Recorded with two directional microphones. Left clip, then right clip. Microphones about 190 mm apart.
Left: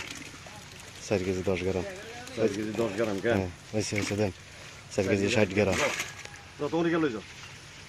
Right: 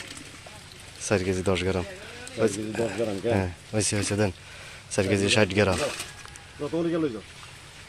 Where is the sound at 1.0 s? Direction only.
Centre (ahead or behind).